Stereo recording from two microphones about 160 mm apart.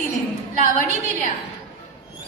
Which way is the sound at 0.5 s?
50° right (ahead or behind).